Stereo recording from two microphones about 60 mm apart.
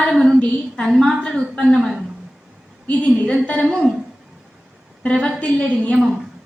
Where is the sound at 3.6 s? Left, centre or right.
Centre.